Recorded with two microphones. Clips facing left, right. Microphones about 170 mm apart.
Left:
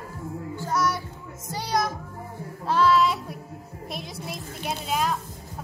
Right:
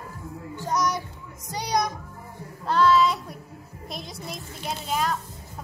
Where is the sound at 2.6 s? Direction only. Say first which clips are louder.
Right 1 dB; 5° left (ahead or behind).